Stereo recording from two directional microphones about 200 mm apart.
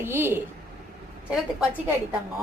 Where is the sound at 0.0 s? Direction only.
10° right (ahead or behind).